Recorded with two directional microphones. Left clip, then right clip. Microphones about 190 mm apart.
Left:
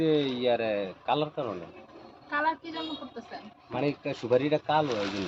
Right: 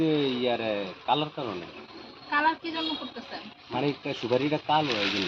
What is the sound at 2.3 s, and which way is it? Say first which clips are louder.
Speech: right 3 dB; 60° left (ahead or behind).